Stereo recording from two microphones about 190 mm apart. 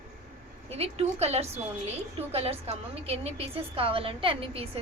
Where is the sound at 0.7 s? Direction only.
35° right (ahead or behind).